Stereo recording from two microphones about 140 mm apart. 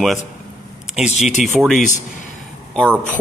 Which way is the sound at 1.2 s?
60° left (ahead or behind).